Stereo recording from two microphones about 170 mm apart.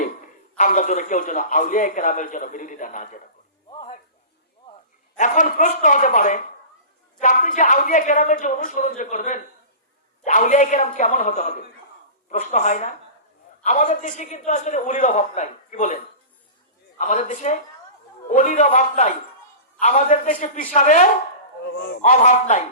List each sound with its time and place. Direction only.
0.5 s a man's voice: 50° left (ahead or behind)
3.7 s a sound: 30° left (ahead or behind)
5.1 s a man's voice: 50° left (ahead or behind)
17.0 s a man's voice: 50° left (ahead or behind)